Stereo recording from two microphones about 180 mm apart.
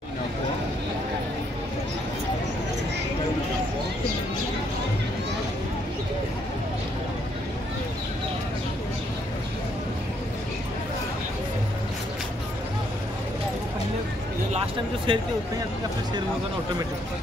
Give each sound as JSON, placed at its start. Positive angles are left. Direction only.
{"t": 15.1, "sound": "speech", "side_deg": -30}